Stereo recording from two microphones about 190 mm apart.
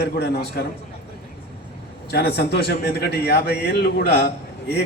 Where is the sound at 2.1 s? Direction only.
60° left (ahead or behind).